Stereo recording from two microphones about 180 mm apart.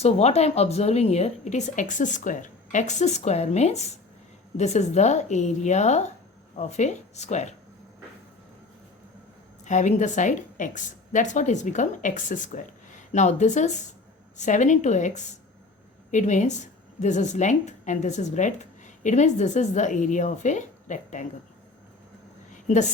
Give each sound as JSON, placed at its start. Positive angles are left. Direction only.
{"t": 0.0, "sound": "speech", "side_deg": 35}
{"t": 9.6, "sound": "speech", "side_deg": 40}
{"t": 22.6, "sound": "a woman's voice", "side_deg": 40}